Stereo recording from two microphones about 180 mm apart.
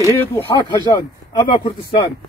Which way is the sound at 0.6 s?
25° left (ahead or behind).